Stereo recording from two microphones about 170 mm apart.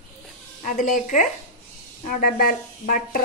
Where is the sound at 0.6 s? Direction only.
50° left (ahead or behind).